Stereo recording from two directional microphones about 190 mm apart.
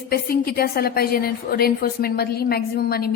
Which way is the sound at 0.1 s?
50° left (ahead or behind).